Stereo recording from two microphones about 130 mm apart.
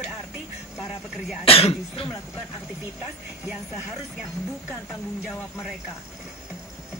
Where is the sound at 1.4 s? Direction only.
50° left (ahead or behind).